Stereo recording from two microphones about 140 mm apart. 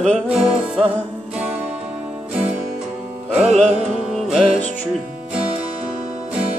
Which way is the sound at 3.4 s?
50° right (ahead or behind).